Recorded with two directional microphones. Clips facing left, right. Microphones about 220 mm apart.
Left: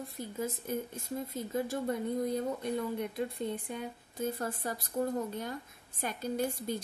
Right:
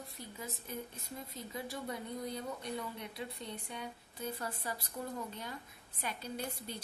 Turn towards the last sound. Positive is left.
turn(degrees=45)  # may be behind; listen again after turning